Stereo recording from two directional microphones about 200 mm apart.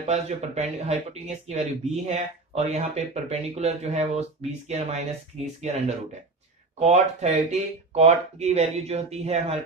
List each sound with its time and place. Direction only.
0.0 s speech: 35° right (ahead or behind)